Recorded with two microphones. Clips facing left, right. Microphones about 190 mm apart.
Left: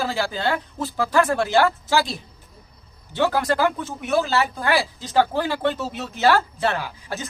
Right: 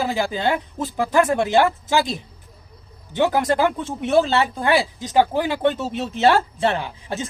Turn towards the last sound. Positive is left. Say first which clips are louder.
# right 3 dB
turn(degrees=-25)  # may be behind; listen again after turning